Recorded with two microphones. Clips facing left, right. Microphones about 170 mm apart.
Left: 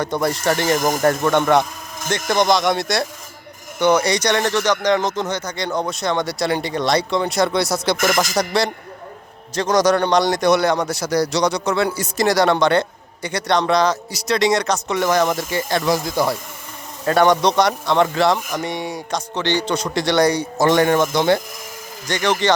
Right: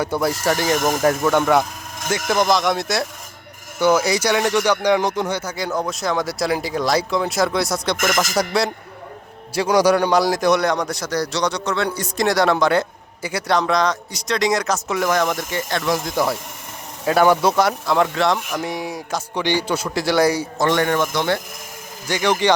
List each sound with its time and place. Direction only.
0.0 s speech: 5° right (ahead or behind)
20.6 s a man's voice: 15° left (ahead or behind)
22.0 s speech: 10° right (ahead or behind)